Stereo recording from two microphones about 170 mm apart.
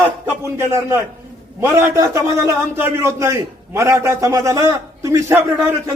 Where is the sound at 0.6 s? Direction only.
15° right (ahead or behind).